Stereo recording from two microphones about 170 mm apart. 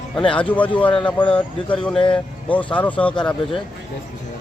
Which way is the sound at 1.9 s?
30° left (ahead or behind).